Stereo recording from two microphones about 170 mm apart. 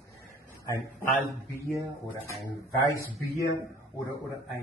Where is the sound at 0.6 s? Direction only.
20° left (ahead or behind).